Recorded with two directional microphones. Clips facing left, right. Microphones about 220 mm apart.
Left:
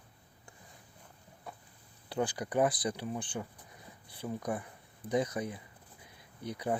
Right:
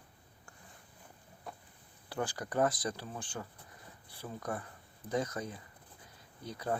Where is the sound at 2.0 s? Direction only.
15° left (ahead or behind).